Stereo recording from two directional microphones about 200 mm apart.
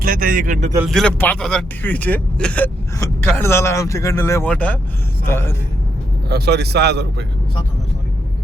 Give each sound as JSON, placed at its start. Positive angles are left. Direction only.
{"t": 0.0, "sound": "speech", "side_deg": -45}
{"t": 0.9, "sound": "speech", "side_deg": 5}
{"t": 6.2, "sound": "speech", "side_deg": -55}